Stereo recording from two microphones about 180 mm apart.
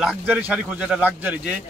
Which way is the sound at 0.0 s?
5° right (ahead or behind).